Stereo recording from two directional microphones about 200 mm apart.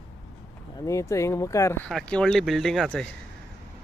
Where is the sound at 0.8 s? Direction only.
15° left (ahead or behind).